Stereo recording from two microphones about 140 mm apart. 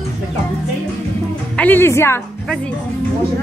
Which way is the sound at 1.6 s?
15° left (ahead or behind).